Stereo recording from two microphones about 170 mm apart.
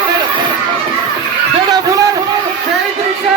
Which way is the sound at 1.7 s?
20° right (ahead or behind).